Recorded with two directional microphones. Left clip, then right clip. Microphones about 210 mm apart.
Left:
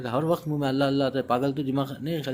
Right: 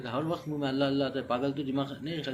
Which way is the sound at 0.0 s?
60° left (ahead or behind).